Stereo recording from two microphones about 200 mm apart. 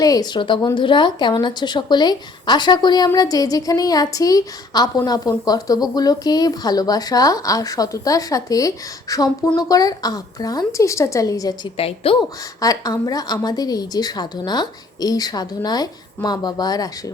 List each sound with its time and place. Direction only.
0.0 s a woman's voice: 20° left (ahead or behind)
12.5 s speech: 15° left (ahead or behind)